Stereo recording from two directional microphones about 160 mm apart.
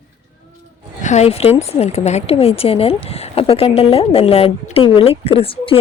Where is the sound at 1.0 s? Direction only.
45° left (ahead or behind).